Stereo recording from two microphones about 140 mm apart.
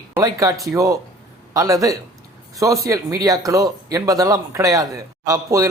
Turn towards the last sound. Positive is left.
turn(degrees=-25)  # may be behind; listen again after turning